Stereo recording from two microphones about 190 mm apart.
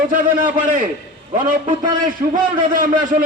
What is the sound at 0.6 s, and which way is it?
Speech, 40° right (ahead or behind).